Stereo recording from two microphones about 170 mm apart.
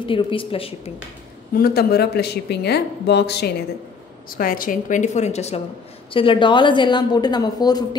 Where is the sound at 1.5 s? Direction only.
65° left (ahead or behind).